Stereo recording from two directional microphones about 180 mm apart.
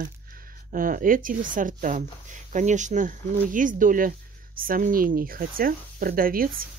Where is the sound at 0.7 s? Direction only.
50° right (ahead or behind).